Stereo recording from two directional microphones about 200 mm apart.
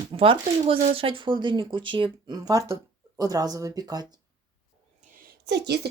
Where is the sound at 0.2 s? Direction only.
25° right (ahead or behind).